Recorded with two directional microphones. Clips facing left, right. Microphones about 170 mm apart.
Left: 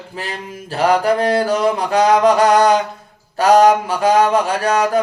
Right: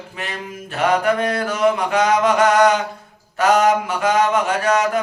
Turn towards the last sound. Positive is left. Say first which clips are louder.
# left 2 dB
turn(degrees=35)  # may be behind; listen again after turning